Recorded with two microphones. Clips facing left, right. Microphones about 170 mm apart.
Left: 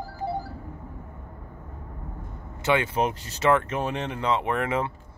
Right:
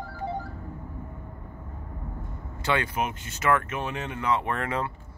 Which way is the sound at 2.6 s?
20° left (ahead or behind).